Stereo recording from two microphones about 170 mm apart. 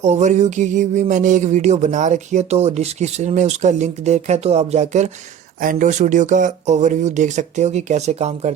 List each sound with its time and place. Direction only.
0.0 s speech: 40° right (ahead or behind)